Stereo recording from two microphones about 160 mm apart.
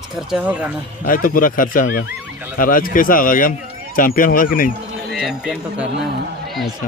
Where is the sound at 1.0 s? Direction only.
60° left (ahead or behind).